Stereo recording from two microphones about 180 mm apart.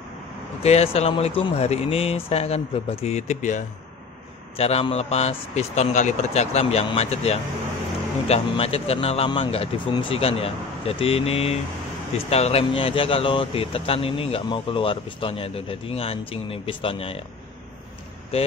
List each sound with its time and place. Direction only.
0.6 s speech: 35° left (ahead or behind)